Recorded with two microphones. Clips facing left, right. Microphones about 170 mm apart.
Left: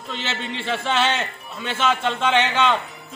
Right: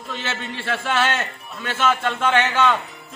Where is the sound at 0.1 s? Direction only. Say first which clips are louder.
Left 1 dB; 20° left (ahead or behind).